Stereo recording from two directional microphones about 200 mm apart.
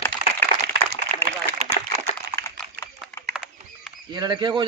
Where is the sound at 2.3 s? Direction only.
30° right (ahead or behind).